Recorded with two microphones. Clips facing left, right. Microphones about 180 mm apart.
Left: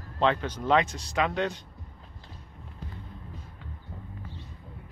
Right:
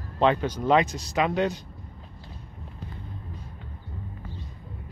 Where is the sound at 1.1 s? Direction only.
10° right (ahead or behind).